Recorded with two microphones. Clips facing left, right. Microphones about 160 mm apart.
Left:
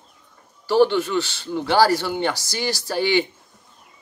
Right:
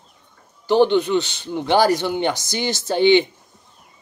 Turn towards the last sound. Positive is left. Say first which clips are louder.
# right 6 dB
turn(degrees=-20)  # may be behind; listen again after turning